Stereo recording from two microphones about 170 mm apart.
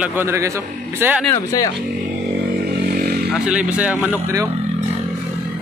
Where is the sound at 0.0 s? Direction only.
15° right (ahead or behind).